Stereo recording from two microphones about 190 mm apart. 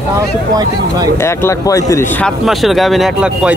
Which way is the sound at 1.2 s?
15° left (ahead or behind).